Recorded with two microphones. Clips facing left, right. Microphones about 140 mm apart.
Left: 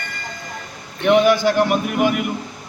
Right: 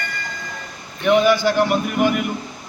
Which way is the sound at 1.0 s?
15° left (ahead or behind).